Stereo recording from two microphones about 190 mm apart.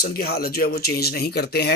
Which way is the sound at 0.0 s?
50° left (ahead or behind).